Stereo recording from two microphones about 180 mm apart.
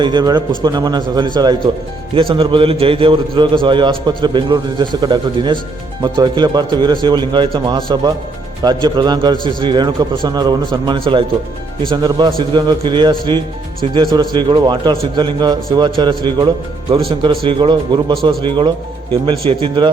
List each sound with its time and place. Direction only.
0.0 s a man's voice: 25° right (ahead or behind)